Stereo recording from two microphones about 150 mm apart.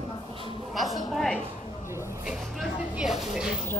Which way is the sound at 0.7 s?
Centre (ahead or behind).